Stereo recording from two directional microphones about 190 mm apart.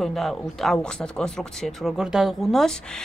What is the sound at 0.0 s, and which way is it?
Speech, centre (ahead or behind).